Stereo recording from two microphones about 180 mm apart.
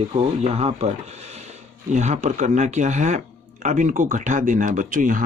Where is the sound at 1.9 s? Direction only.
40° right (ahead or behind).